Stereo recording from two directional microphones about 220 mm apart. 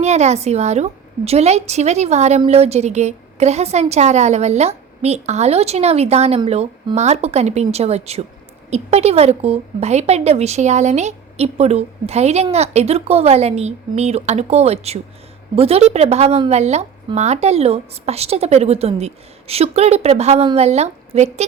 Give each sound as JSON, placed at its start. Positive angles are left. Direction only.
{"t": 0.0, "sound": "a woman's voice", "side_deg": -30}